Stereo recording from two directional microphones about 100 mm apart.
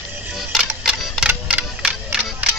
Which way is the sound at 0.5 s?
5° right (ahead or behind).